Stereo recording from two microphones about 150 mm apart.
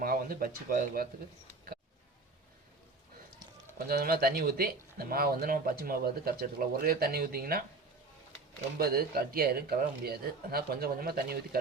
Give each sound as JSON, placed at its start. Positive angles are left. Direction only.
{"t": 0.0, "sound": "speech", "side_deg": -75}
{"t": 3.8, "sound": "speech", "side_deg": -80}
{"t": 8.8, "sound": "speech", "side_deg": -85}